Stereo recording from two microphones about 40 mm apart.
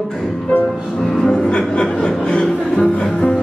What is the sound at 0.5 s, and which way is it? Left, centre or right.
Music, left.